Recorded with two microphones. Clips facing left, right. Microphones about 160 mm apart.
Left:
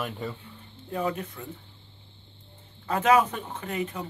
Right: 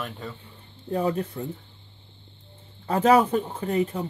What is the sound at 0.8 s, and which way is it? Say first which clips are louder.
Speech: right 4 dB; 35° right (ahead or behind).